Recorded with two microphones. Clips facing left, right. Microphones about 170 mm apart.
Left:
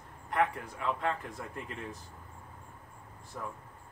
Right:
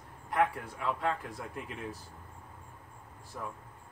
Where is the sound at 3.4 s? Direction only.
Centre (ahead or behind).